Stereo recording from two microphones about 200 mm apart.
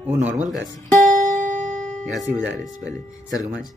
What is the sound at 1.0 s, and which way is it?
Music, 40° right (ahead or behind).